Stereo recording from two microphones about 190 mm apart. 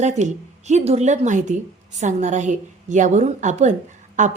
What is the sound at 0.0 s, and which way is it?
A woman's voice, 40° right (ahead or behind).